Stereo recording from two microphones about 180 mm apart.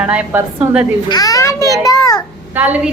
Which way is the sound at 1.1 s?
20° left (ahead or behind).